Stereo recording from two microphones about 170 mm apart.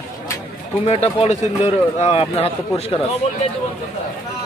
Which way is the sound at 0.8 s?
35° left (ahead or behind).